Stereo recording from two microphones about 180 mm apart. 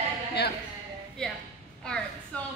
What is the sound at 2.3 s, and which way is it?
Speech, 5° left (ahead or behind).